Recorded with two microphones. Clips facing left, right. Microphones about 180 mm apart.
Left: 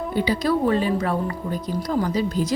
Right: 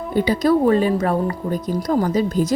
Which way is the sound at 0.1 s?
45° right (ahead or behind).